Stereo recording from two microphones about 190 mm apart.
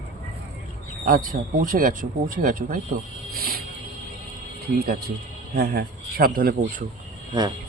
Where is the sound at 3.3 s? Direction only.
50° right (ahead or behind).